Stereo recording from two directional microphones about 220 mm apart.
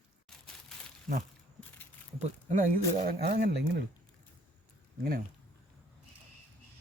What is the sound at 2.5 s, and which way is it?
Speech, 35° right (ahead or behind).